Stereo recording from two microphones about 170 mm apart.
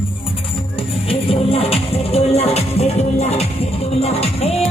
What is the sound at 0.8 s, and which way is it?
Music, 35° left (ahead or behind).